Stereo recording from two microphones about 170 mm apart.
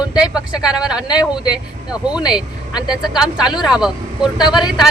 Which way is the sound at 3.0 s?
5° right (ahead or behind).